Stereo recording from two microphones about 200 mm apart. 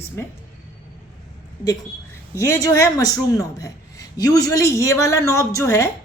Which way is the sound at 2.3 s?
15° left (ahead or behind).